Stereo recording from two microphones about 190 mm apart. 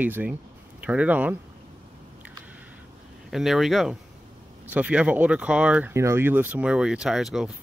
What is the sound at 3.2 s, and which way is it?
Speech, centre (ahead or behind).